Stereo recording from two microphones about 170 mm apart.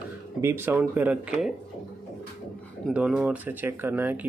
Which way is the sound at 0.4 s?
15° right (ahead or behind).